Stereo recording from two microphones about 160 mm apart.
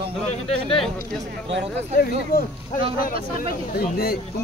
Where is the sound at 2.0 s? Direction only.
70° left (ahead or behind).